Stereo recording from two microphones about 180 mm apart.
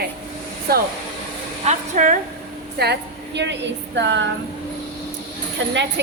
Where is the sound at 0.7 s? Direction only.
60° right (ahead or behind).